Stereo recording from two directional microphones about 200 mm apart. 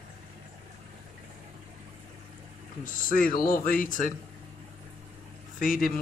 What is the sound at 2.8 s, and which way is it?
Speech, 40° left (ahead or behind).